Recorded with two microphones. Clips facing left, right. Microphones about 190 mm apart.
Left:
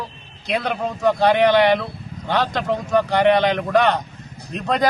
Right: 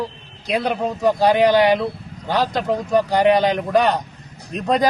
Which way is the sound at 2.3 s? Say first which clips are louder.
Right 1 dB; 35° right (ahead or behind).